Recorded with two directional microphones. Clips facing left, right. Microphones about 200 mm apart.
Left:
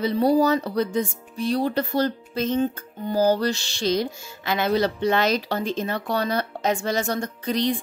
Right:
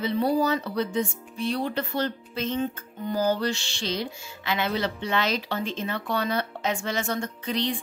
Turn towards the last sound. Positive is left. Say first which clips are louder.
# left 4 dB
turn(degrees=40)  # may be behind; listen again after turning